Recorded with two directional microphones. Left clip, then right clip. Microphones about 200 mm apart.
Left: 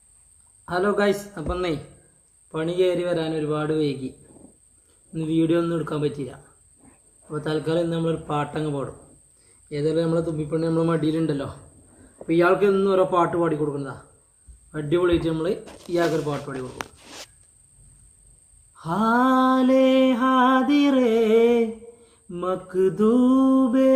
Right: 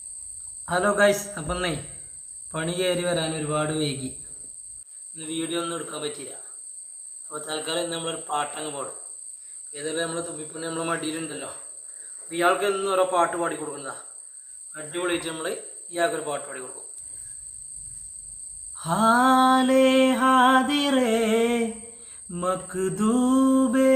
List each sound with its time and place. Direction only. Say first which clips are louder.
0.6 s a man's voice: right 1 dB; 15° right (ahead or behind)
2.5 s mantra: left 4 dB; 20° right (ahead or behind)
5.1 s mantra: left 8 dB; 20° right (ahead or behind)
7.3 s mantra: left 5 dB; 20° right (ahead or behind)
9.7 s a man's voice: left 6 dB; 15° right (ahead or behind)
12.3 s mantra: left 4 dB; 20° right (ahead or behind)
18.7 s mantra: right 2 dB; 20° right (ahead or behind)